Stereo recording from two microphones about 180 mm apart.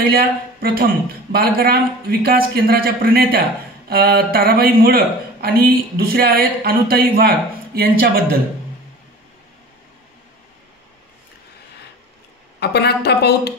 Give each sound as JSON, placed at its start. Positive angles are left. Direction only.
{"t": 0.0, "sound": "a woman's voice", "side_deg": -55}
{"t": 12.5, "sound": "speech", "side_deg": 65}